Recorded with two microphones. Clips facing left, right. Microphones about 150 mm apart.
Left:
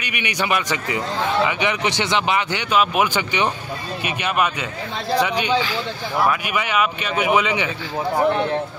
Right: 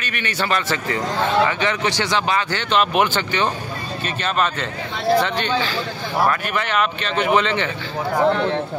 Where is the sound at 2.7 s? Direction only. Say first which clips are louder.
Right 1 dB; 5° left (ahead or behind).